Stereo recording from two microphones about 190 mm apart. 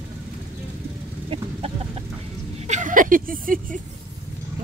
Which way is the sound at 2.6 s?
40° right (ahead or behind).